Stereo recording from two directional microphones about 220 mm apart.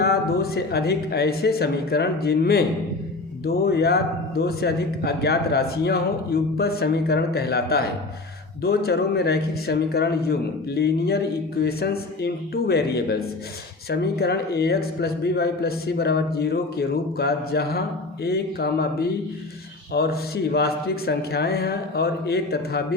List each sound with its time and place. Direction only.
0.0 s a man's voice: 45° left (ahead or behind)